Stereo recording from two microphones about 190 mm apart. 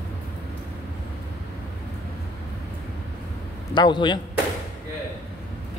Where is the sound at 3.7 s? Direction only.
25° left (ahead or behind).